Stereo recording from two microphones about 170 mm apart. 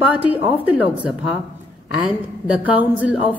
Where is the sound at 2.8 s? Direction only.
10° right (ahead or behind).